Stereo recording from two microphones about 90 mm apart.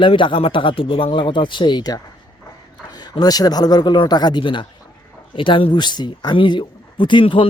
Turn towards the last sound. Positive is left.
turn(degrees=70)  # may be behind; listen again after turning